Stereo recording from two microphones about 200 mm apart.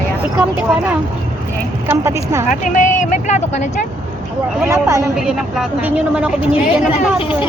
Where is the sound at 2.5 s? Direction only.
40° left (ahead or behind).